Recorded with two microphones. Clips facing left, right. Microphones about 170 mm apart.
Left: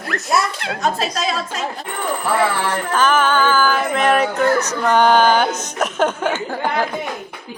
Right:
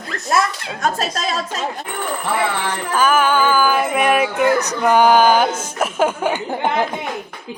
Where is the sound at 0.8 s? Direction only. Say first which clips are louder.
Even; 50° right (ahead or behind).